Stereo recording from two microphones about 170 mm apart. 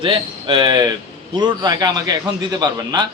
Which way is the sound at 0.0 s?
30° right (ahead or behind).